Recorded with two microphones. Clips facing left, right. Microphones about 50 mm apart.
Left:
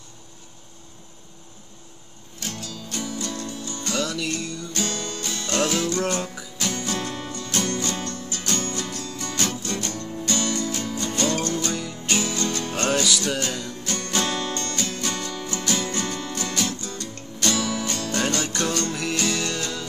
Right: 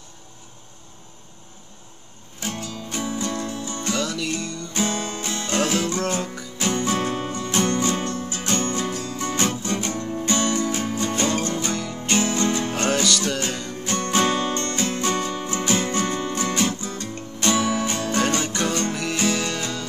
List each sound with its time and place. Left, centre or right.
2.4 s music: right
3.9 s music: centre
4.7 s music: right
5.6 s music: centre
6.2 s music: centre
6.6 s music: right; by 13.7 s centre
13.8 s music: right; by 19.6 s centre